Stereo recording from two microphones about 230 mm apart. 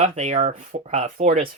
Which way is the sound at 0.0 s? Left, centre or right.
Right.